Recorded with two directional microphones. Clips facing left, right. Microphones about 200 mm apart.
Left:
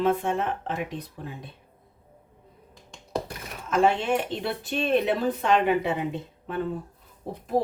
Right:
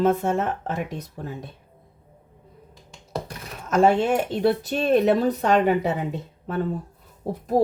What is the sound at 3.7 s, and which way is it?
Speech, 40° right (ahead or behind).